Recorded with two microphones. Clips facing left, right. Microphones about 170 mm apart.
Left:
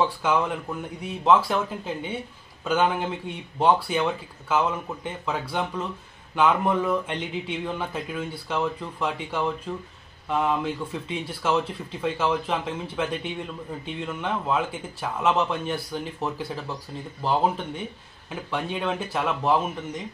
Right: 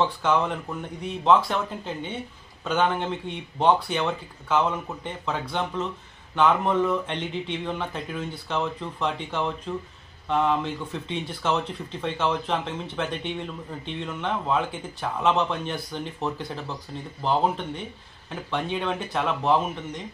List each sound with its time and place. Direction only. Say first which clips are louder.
0.0 s speech: even; 5° left (ahead or behind)
2.6 s speech: left 1 dB; 5° left (ahead or behind)